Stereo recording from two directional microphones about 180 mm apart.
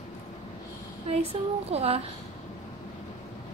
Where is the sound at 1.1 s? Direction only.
35° right (ahead or behind).